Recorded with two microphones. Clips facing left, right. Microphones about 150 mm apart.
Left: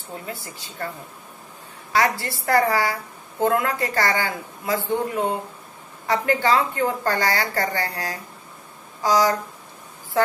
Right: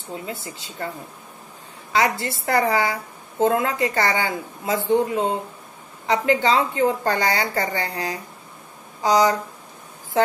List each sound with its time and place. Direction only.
0.1 s a woman's voice: 20° right (ahead or behind)
1.9 s a woman's voice: 20° right (ahead or behind)